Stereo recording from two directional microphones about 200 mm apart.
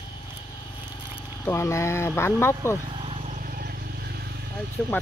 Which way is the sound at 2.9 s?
30° right (ahead or behind).